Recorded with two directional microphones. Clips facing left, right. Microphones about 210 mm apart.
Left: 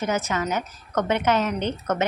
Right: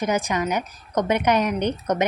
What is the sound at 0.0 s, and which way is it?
A woman's voice, 15° right (ahead or behind).